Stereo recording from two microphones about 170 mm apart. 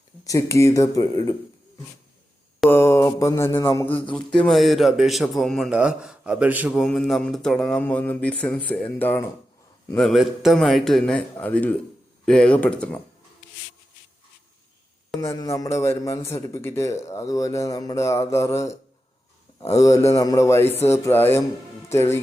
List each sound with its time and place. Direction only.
0.3 s speech: 20° left (ahead or behind)
2.6 s mantra: 15° left (ahead or behind)
4.4 s a man's voice: centre (ahead or behind)
15.2 s speech: 15° left (ahead or behind)